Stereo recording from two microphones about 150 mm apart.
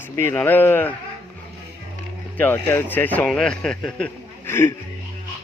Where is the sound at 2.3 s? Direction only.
10° left (ahead or behind).